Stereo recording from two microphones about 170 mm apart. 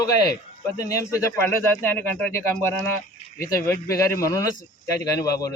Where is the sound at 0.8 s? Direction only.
20° left (ahead or behind).